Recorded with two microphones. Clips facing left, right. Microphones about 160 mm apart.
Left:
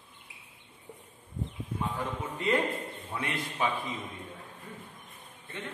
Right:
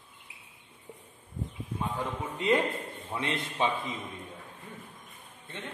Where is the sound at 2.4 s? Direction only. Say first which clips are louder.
Right 2 dB; 20° right (ahead or behind).